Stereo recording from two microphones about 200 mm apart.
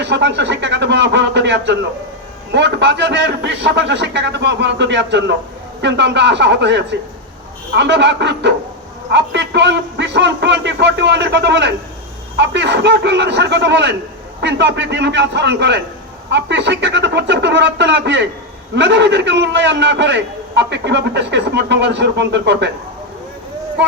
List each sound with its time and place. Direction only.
0.0 s a man's voice: 60° right (ahead or behind)